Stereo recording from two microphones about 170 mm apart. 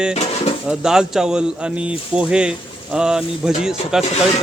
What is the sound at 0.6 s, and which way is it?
Speech, 5° right (ahead or behind).